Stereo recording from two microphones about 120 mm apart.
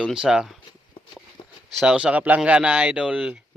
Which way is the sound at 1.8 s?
5° right (ahead or behind).